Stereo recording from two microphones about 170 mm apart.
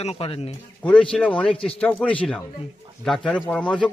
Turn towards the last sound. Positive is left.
turn(degrees=5)  # may be behind; listen again after turning